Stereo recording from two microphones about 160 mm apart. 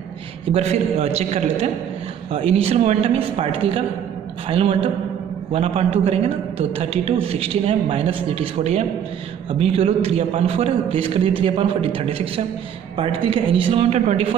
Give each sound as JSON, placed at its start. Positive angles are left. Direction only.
{"t": 0.5, "sound": "a man's voice", "side_deg": -40}